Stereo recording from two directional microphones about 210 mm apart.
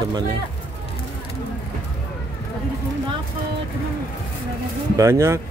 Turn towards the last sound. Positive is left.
turn(degrees=-15)  # may be behind; listen again after turning